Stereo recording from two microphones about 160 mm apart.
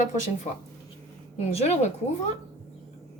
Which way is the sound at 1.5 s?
40° left (ahead or behind).